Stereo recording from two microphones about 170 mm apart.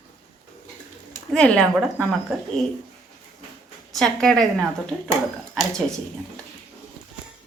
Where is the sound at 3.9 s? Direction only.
Centre (ahead or behind).